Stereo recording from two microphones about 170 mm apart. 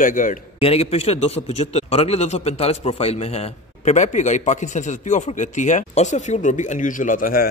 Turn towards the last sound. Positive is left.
turn(degrees=60)  # may be behind; listen again after turning